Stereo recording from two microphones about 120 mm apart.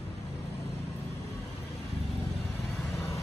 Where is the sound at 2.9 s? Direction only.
25° left (ahead or behind).